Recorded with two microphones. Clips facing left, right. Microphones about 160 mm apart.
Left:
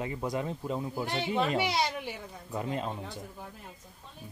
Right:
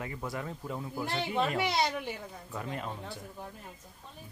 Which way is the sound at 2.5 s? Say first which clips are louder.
Left 5 dB; 20° left (ahead or behind).